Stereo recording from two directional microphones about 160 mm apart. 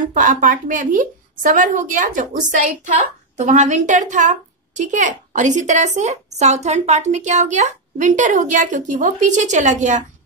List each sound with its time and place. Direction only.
0.1 s a woman's voice: 55° right (ahead or behind)